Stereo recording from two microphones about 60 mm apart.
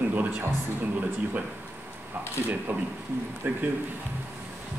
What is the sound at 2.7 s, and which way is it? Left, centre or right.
Speech, right.